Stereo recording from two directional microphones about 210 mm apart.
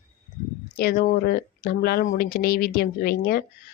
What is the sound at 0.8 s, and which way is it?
Speech, 45° left (ahead or behind).